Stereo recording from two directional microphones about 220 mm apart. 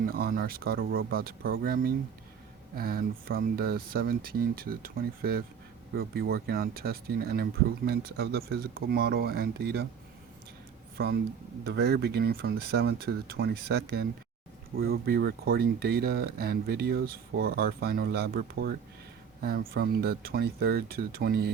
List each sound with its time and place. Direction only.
0.1 s speech: 45° right (ahead or behind)
10.9 s speech: 45° right (ahead or behind)